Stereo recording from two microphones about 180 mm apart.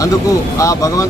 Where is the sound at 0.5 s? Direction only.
15° left (ahead or behind).